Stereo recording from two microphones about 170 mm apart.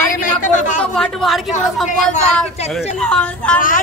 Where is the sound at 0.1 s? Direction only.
50° left (ahead or behind).